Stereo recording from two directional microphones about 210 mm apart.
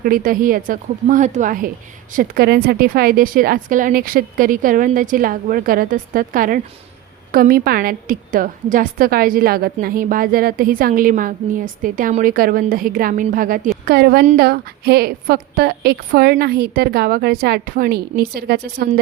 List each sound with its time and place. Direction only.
0.0 s a woman's voice: 45° right (ahead or behind)